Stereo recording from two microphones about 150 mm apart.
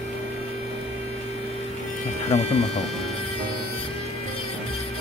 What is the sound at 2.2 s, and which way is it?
Speech, 45° left (ahead or behind).